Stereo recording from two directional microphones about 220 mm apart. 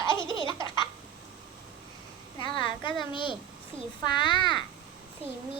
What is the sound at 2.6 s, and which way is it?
Speech, 20° left (ahead or behind).